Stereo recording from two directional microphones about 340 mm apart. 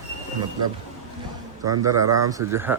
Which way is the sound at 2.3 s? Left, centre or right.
Centre.